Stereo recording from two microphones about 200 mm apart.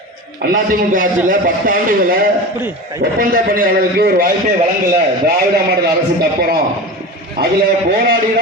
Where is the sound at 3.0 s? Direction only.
45° right (ahead or behind).